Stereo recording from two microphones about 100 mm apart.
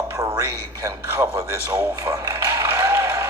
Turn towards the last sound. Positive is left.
turn(degrees=-30)  # may be behind; listen again after turning